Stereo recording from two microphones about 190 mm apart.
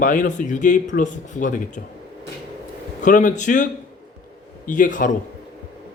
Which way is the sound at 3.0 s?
40° left (ahead or behind).